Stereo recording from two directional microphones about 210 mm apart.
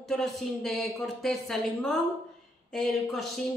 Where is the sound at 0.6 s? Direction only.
Centre (ahead or behind).